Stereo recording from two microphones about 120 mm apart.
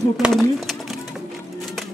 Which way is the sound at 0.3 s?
Centre (ahead or behind).